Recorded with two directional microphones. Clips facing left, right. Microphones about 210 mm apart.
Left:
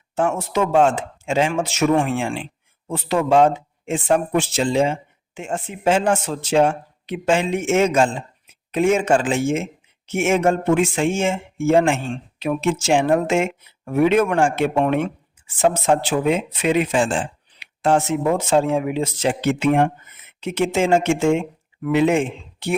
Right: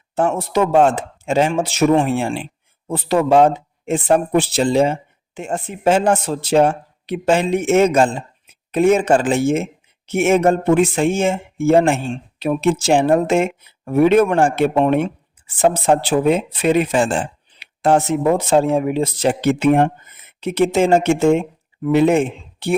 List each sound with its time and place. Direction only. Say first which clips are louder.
0.2 s speech: right 3 dB; 35° right (ahead or behind)